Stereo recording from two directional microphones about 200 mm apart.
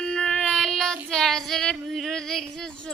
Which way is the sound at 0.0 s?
5° left (ahead or behind).